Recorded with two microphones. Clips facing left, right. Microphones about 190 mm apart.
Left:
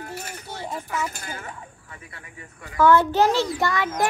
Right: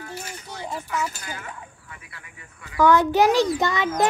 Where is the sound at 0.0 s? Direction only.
30° left (ahead or behind).